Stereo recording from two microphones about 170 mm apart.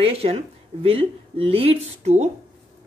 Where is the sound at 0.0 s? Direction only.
35° right (ahead or behind).